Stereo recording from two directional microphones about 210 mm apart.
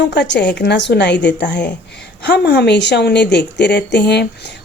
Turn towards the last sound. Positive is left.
turn(degrees=55)  # may be behind; listen again after turning